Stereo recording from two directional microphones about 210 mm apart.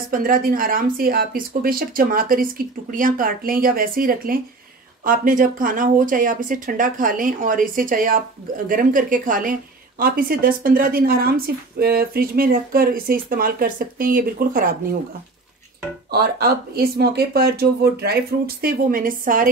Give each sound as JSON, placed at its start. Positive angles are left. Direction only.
{"t": 0.1, "sound": "a woman's voice", "side_deg": -40}
{"t": 16.1, "sound": "a woman's voice", "side_deg": -50}